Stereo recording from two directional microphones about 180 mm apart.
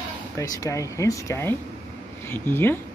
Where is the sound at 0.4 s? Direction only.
15° left (ahead or behind).